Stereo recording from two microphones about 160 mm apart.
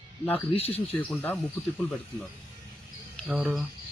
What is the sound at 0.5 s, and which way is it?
Speech, 40° left (ahead or behind).